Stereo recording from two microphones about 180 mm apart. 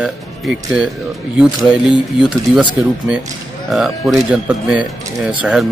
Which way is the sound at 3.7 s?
Centre (ahead or behind).